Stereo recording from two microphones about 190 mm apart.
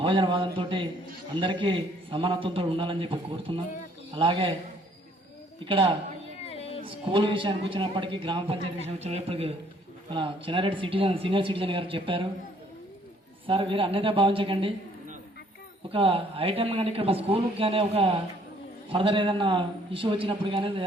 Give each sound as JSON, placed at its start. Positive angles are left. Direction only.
{"t": 0.0, "sound": "speech", "side_deg": -25}
{"t": 5.6, "sound": "speech", "side_deg": -30}
{"t": 6.4, "sound": "music", "side_deg": 30}
{"t": 6.8, "sound": "speech", "side_deg": -25}
{"t": 13.5, "sound": "speech", "side_deg": -25}
{"t": 15.9, "sound": "a man's voice", "side_deg": -30}